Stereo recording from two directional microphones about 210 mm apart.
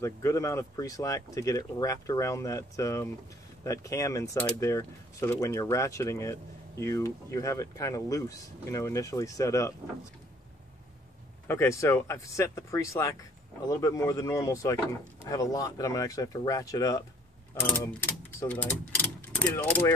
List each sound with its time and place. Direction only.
0.0 s speech: 15° left (ahead or behind)
11.4 s speech: 10° left (ahead or behind)